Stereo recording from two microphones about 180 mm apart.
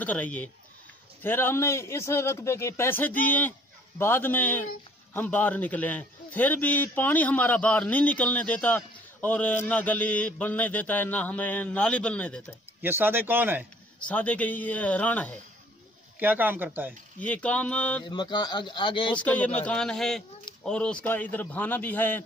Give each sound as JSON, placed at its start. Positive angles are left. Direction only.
{"t": 0.0, "sound": "a man's voice", "side_deg": 10}
{"t": 12.8, "sound": "speech", "side_deg": -10}
{"t": 13.9, "sound": "a man's voice", "side_deg": 5}
{"t": 16.2, "sound": "speech", "side_deg": -10}
{"t": 17.2, "sound": "a man's voice", "side_deg": 10}
{"t": 18.0, "sound": "a man's voice", "side_deg": 25}
{"t": 19.1, "sound": "a man's voice", "side_deg": 10}